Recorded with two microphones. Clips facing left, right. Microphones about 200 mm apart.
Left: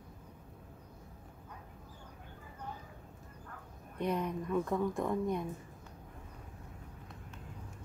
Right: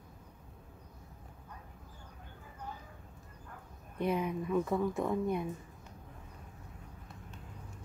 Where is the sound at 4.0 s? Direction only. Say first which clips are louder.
Right 2 dB; 5° right (ahead or behind).